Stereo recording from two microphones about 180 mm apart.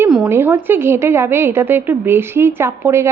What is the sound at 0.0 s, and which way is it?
A woman's voice, 10° right (ahead or behind).